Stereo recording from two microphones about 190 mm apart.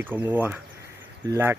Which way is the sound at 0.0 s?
10° right (ahead or behind).